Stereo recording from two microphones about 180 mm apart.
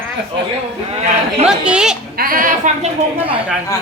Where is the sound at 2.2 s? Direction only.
50° right (ahead or behind); by 3.4 s 30° right (ahead or behind).